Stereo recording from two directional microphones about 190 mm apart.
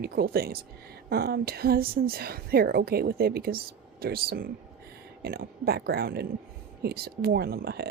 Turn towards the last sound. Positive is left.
turn(degrees=-55)  # may be behind; listen again after turning